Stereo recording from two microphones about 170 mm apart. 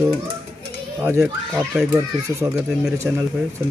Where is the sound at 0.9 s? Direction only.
15° right (ahead or behind).